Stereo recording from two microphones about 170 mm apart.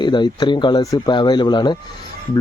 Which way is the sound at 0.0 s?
25° left (ahead or behind).